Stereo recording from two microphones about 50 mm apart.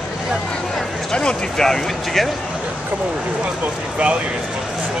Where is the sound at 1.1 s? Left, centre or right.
Centre.